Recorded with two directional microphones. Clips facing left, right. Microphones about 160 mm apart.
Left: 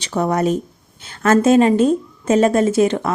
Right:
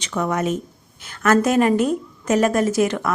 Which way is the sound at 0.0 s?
35° left (ahead or behind).